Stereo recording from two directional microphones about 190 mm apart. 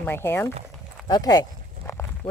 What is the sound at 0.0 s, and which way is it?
Speech, 10° left (ahead or behind).